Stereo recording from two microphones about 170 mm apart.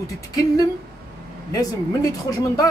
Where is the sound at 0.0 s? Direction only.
20° left (ahead or behind).